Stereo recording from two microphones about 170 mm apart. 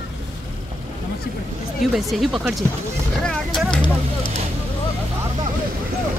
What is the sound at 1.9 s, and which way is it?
Speech, centre (ahead or behind).